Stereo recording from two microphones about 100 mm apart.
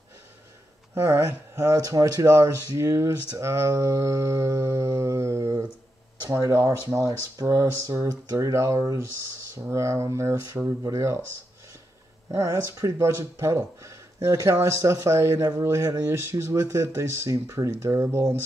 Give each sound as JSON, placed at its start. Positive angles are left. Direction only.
{"t": 0.9, "sound": "speech", "side_deg": -30}
{"t": 12.3, "sound": "speech", "side_deg": -30}